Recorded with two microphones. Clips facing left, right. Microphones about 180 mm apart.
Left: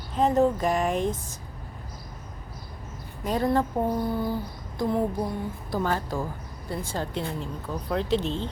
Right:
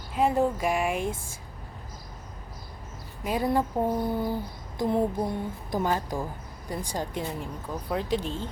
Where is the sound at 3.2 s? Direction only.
10° right (ahead or behind).